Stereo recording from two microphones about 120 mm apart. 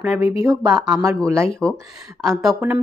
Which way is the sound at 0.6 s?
30° right (ahead or behind).